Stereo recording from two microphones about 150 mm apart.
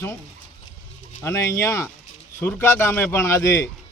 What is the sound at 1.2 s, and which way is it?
A man's voice, 20° left (ahead or behind).